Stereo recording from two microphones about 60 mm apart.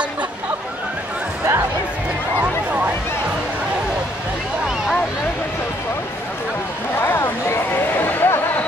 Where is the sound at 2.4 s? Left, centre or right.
Right.